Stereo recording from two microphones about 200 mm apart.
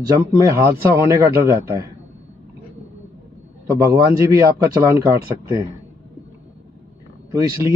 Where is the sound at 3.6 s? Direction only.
15° right (ahead or behind).